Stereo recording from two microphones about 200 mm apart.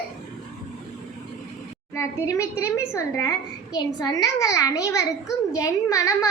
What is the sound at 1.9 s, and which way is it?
A woman's voice, 15° left (ahead or behind).